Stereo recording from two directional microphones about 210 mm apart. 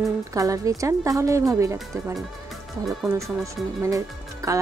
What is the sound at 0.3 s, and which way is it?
Speech, 15° right (ahead or behind).